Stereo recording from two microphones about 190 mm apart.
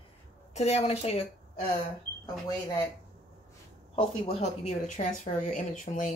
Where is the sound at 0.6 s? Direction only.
35° left (ahead or behind).